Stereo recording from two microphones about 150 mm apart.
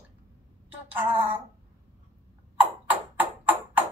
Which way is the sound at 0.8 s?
15° right (ahead or behind).